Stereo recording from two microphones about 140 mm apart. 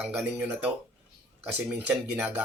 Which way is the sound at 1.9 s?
10° right (ahead or behind).